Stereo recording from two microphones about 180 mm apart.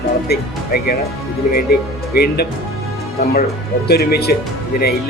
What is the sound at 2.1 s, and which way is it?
Speech, 60° left (ahead or behind).